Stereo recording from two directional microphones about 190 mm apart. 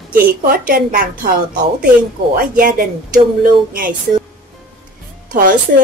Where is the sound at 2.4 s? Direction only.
50° right (ahead or behind).